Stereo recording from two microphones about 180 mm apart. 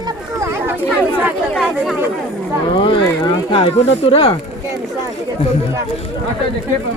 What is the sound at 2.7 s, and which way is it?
Speech, 30° left (ahead or behind).